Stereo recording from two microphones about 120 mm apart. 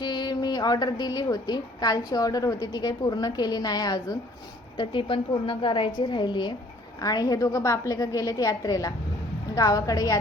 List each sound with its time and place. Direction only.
0.0 s a woman's voice: 35° left (ahead or behind)